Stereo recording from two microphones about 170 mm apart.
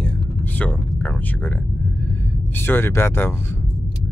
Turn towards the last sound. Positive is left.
turn(degrees=15)  # may be behind; listen again after turning